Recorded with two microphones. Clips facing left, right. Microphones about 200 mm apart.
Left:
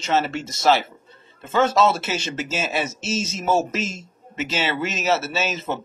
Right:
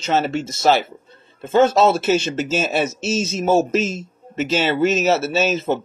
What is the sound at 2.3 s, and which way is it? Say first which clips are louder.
Speech: right 5 dB; 45° right (ahead or behind).